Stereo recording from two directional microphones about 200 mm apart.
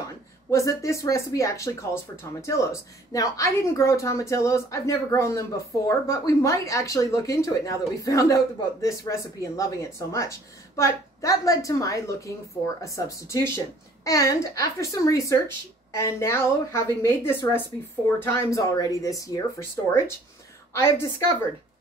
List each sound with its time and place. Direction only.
0.5 s a woman's voice: 15° left (ahead or behind)
20.7 s a woman's voice: 15° left (ahead or behind)